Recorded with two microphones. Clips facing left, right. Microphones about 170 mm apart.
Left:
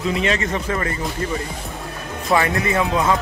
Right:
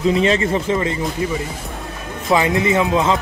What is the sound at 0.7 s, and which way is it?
Speech, 15° right (ahead or behind).